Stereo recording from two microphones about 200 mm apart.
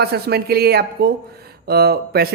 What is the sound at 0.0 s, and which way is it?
Speech, 55° right (ahead or behind).